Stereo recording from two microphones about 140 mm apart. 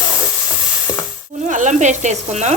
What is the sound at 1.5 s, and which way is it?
Speech, 60° right (ahead or behind).